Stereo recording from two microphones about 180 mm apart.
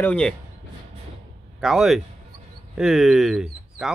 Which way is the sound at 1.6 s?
Centre (ahead or behind).